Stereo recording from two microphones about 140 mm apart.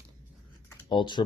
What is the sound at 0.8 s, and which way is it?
Speech, 35° left (ahead or behind).